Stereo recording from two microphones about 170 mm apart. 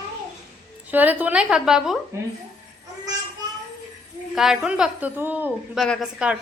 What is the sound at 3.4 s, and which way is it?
Child singing, 25° right (ahead or behind).